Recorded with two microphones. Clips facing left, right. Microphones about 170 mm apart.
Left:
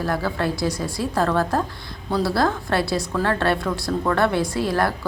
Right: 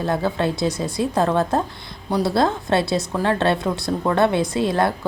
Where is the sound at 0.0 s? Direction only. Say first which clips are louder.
Right 2 dB; 25° right (ahead or behind).